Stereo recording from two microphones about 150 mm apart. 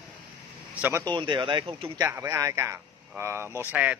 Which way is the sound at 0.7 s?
10° right (ahead or behind).